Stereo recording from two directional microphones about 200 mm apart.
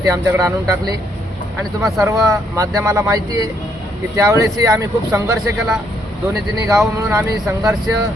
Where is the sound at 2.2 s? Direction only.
15° right (ahead or behind).